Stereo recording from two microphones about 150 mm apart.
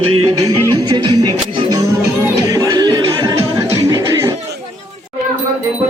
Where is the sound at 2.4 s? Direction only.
25° right (ahead or behind).